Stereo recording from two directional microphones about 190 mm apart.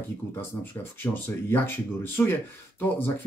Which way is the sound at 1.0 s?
10° left (ahead or behind).